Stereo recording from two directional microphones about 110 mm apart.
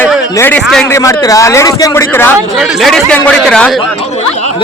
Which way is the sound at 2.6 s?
Centre (ahead or behind).